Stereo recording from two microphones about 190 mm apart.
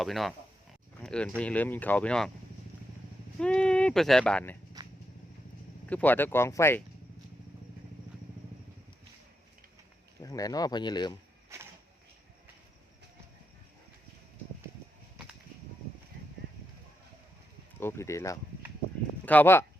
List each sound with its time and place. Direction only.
0.0 s speech: centre (ahead or behind)
3.3 s speech: 5° left (ahead or behind)
4.8 s vehicle: 20° right (ahead or behind)
5.9 s speech: 10° left (ahead or behind)
10.2 s speech: 20° left (ahead or behind)
17.7 s speech: 15° left (ahead or behind)